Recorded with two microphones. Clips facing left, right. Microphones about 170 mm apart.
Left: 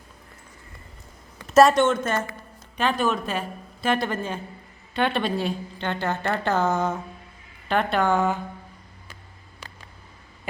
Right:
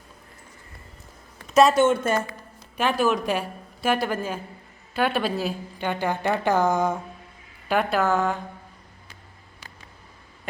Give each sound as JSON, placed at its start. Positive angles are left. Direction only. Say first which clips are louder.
{"t": 1.5, "sound": "a woman's voice", "louder": "left 1 dB", "side_deg": 0}